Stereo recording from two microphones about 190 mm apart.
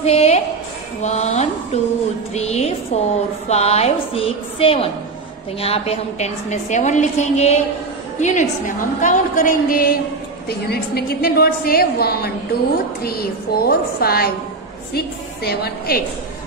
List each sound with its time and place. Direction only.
0.0 s a woman's voice: 35° left (ahead or behind)
1.0 s a sound: 35° left (ahead or behind)
2.3 s a woman's voice: 35° left (ahead or behind); by 16.0 s 55° left (ahead or behind)